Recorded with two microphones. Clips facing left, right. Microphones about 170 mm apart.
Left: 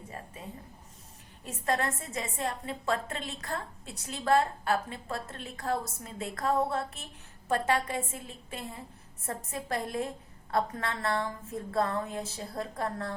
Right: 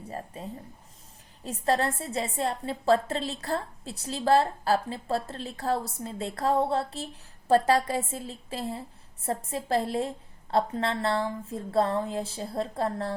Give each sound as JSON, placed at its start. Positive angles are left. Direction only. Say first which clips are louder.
{"t": 1.5, "sound": "a woman's voice", "louder": "right 4 dB", "side_deg": -30}